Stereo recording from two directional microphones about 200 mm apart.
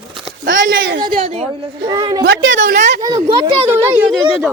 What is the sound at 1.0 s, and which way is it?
Speech, 25° right (ahead or behind).